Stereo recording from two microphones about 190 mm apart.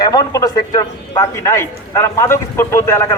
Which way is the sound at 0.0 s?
20° left (ahead or behind).